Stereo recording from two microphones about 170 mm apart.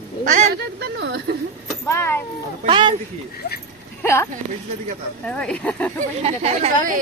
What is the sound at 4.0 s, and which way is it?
Speech, 15° left (ahead or behind).